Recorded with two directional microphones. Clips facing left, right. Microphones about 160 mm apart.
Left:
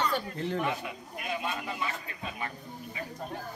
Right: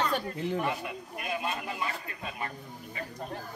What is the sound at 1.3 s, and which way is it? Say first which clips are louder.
A man's voice: even; centre (ahead or behind).